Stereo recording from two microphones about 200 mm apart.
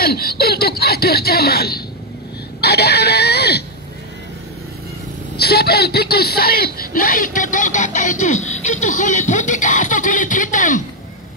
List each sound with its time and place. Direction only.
0.0 s a man's voice: 50° left (ahead or behind)
5.4 s a man's voice: 55° left (ahead or behind); by 8.7 s 35° left (ahead or behind)
8.8 s music: 40° left (ahead or behind)